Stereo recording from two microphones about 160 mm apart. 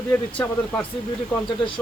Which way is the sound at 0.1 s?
10° left (ahead or behind).